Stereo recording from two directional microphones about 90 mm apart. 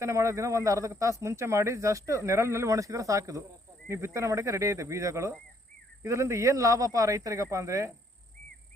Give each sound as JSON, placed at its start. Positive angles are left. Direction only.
{"t": 0.0, "sound": "speech", "side_deg": -35}